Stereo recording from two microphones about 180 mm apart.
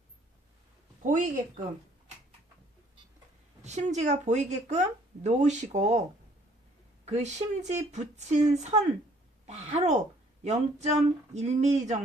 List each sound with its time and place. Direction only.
1.0 s speech: 45° right (ahead or behind)
3.6 s speech: 40° right (ahead or behind)
7.0 s speech: 40° right (ahead or behind)